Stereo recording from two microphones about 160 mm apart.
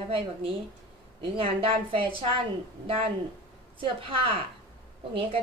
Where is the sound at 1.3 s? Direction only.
35° right (ahead or behind).